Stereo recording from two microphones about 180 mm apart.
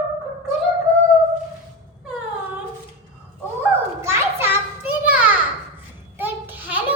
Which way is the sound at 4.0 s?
15° right (ahead or behind).